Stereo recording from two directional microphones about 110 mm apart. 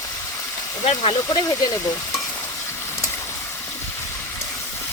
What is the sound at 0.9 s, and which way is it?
Speech, 55° left (ahead or behind).